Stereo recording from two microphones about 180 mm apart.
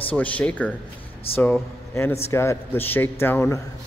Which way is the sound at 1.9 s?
15° left (ahead or behind).